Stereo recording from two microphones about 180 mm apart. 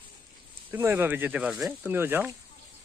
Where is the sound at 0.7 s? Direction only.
15° right (ahead or behind).